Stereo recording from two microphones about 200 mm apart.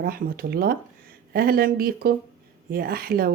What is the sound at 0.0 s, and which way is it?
Speech, 50° right (ahead or behind).